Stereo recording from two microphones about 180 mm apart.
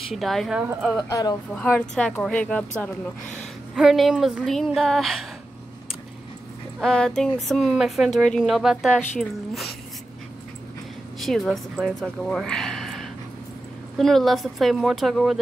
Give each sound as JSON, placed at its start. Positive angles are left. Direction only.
{"t": 0.1, "sound": "a woman's voice", "side_deg": 0}
{"t": 1.0, "sound": "speech", "side_deg": 20}
{"t": 1.5, "sound": "a woman's voice", "side_deg": 5}
{"t": 6.8, "sound": "a woman's voice", "side_deg": 5}
{"t": 11.1, "sound": "a woman's voice", "side_deg": 0}